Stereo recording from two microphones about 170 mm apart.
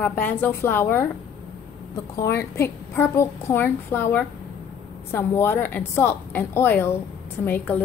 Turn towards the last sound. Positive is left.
turn(degrees=10)  # may be behind; listen again after turning